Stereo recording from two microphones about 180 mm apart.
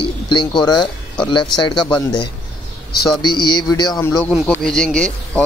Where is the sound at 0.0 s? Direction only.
25° left (ahead or behind).